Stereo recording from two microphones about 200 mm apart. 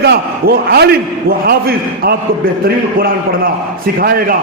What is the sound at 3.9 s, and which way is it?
Speech, 45° right (ahead or behind).